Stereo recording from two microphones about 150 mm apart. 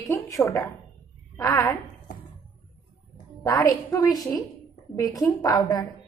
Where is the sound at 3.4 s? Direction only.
20° left (ahead or behind).